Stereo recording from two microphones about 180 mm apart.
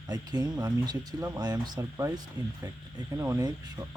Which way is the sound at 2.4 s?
25° left (ahead or behind).